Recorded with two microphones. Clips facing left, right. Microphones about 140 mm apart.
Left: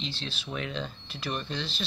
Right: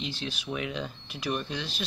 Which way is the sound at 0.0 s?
10° right (ahead or behind).